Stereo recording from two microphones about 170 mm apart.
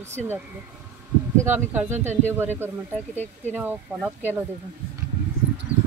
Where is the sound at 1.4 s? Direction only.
10° right (ahead or behind).